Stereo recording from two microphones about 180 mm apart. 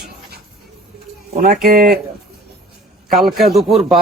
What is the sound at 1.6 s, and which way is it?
Speech, 50° right (ahead or behind).